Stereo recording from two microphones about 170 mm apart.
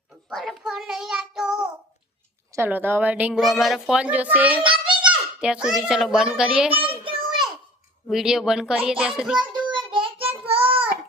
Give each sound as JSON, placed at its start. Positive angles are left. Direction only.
{"t": 0.3, "sound": "child singing", "side_deg": 0}
{"t": 2.6, "sound": "speech", "side_deg": -10}
{"t": 4.6, "sound": "a sound", "side_deg": -30}
{"t": 5.4, "sound": "a child's voice", "side_deg": -5}
{"t": 6.8, "sound": "a sound", "side_deg": -30}
{"t": 8.0, "sound": "a child's voice", "side_deg": -5}
{"t": 9.7, "sound": "child singing", "side_deg": -30}